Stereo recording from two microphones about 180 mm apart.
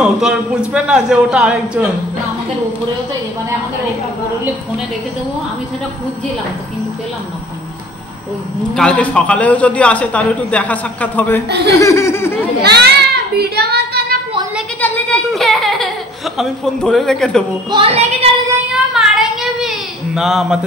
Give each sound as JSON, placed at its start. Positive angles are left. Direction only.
{"t": 0.0, "sound": "a man's voice", "side_deg": -5}
{"t": 8.7, "sound": "a man's voice", "side_deg": 5}
{"t": 11.8, "sound": "laughter", "side_deg": 15}
{"t": 12.6, "sound": "child singing", "side_deg": -65}
{"t": 14.8, "sound": "a man's voice", "side_deg": 5}
{"t": 17.6, "sound": "a woman's voice", "side_deg": -30}
{"t": 18.9, "sound": "child singing", "side_deg": 0}
{"t": 20.2, "sound": "a man's voice", "side_deg": -5}